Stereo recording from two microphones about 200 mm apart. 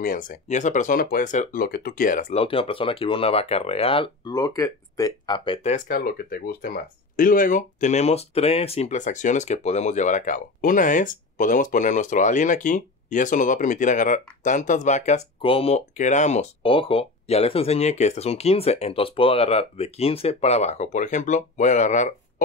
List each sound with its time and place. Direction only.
0.0 s speech: 45° left (ahead or behind); by 5.8 s 30° left (ahead or behind)
5.9 s speech: 45° left (ahead or behind)